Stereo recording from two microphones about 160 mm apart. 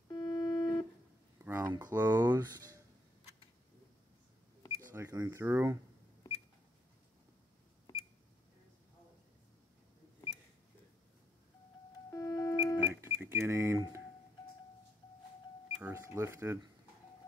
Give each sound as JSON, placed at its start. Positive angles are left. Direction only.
{"t": 0.1, "sound": "organ", "side_deg": 25}
{"t": 1.4, "sound": "a sound", "side_deg": -15}
{"t": 1.8, "sound": "speech", "side_deg": -20}
{"t": 4.7, "sound": "speech", "side_deg": -15}
{"t": 7.9, "sound": "a sound", "side_deg": 20}
{"t": 12.1, "sound": "beep", "side_deg": 20}
{"t": 12.7, "sound": "guitar", "side_deg": -15}
{"t": 15.8, "sound": "cash register", "side_deg": -15}